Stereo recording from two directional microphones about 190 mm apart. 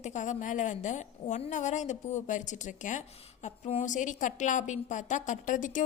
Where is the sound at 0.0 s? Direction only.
40° left (ahead or behind).